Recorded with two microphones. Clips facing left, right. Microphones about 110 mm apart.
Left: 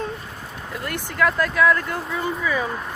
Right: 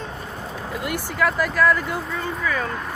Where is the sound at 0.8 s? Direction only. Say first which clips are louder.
Left 1 dB; 5° right (ahead or behind).